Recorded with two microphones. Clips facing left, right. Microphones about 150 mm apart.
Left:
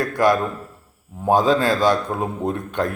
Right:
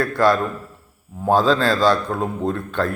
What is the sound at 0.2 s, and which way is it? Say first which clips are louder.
A man's voice: even; 15° left (ahead or behind).